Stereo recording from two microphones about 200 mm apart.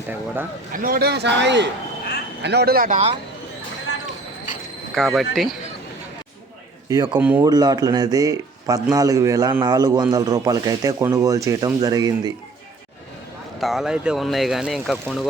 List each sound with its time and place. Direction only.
0.7 s a man's voice: 45° right (ahead or behind)
4.9 s speech: centre (ahead or behind)
6.8 s speech: 20° right (ahead or behind)
7.2 s speech: 10° right (ahead or behind)
7.5 s speech: 20° right (ahead or behind)
13.6 s speech: centre (ahead or behind)